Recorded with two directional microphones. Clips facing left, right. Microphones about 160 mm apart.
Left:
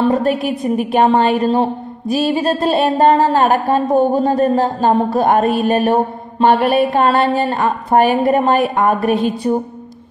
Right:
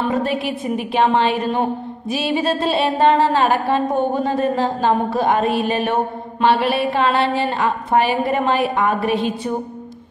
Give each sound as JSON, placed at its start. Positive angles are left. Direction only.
{"t": 0.1, "sound": "a woman's voice", "side_deg": 45}